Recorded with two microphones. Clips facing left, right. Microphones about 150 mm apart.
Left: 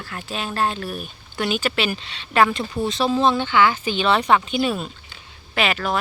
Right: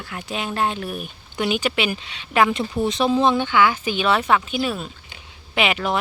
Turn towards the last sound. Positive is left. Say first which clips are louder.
# right 1 dB
turn(degrees=-15)  # may be behind; listen again after turning